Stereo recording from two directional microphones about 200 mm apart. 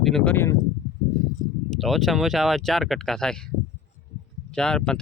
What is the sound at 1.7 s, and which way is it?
Speech, centre (ahead or behind).